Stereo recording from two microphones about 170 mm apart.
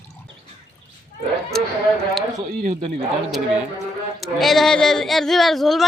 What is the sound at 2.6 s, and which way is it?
Speech, 40° right (ahead or behind).